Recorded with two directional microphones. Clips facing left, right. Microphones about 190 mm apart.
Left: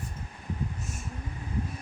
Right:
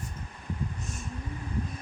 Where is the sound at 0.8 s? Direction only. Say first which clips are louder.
Even; 5° left (ahead or behind).